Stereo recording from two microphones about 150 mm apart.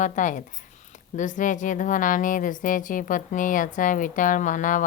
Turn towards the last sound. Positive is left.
turn(degrees=60)  # may be behind; listen again after turning